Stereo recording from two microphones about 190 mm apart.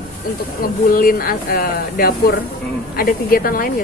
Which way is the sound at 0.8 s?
50° left (ahead or behind).